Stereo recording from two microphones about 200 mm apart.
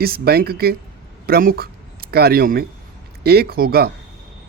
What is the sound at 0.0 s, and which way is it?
Speech, 50° right (ahead or behind).